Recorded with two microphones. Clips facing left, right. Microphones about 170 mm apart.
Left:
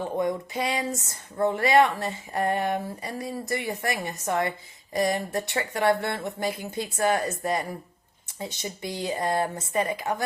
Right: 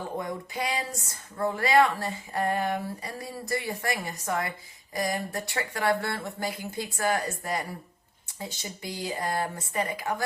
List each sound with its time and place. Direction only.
0.2 s speech: 25° left (ahead or behind)